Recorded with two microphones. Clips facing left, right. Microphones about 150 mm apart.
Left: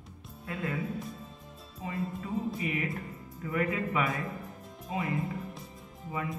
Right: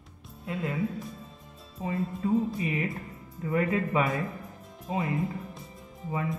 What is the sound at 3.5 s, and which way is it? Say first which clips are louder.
Speech: right 4 dB; 30° right (ahead or behind).